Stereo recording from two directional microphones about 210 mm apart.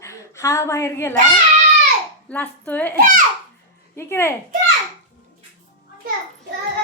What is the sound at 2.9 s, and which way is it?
Speech, 40° right (ahead or behind).